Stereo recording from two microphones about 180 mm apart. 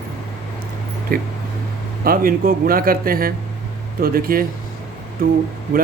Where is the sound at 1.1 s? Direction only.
55° right (ahead or behind).